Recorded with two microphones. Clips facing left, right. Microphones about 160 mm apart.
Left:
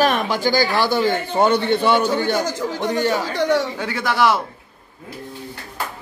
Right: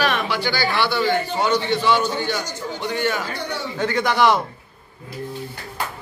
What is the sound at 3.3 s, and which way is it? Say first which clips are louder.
Speech: left 10 dB; 90° left.